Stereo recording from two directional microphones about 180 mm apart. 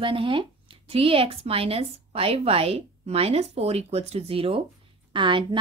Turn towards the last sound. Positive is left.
turn(degrees=-25)  # may be behind; listen again after turning